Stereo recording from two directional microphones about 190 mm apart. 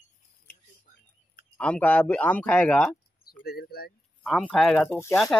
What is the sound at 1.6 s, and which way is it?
Speech, 5° left (ahead or behind).